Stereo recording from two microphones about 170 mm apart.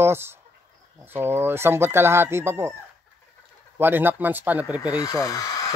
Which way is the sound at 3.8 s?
10° right (ahead or behind).